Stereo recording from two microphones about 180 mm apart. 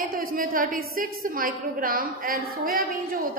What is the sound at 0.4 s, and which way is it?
A woman's voice, 50° right (ahead or behind).